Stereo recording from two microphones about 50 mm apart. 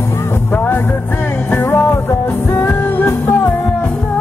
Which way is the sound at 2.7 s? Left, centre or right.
Left.